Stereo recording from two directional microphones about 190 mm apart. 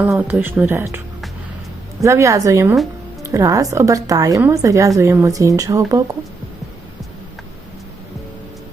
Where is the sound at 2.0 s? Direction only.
15° right (ahead or behind).